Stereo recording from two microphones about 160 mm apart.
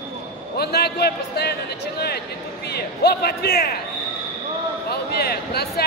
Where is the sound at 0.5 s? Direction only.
85° left.